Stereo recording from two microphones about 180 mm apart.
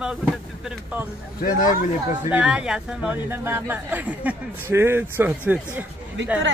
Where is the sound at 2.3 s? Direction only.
5° right (ahead or behind).